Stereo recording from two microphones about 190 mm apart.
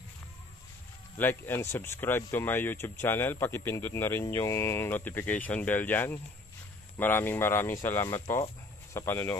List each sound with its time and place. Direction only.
1.1 s speech: 10° left (ahead or behind)